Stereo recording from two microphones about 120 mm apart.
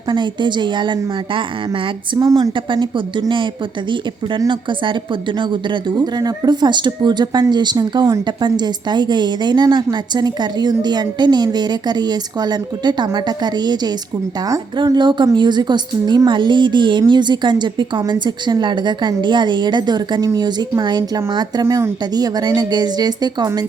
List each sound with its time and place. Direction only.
0.1 s a woman's voice: 40° right (ahead or behind)
2.1 s a woman's voice: 35° right (ahead or behind)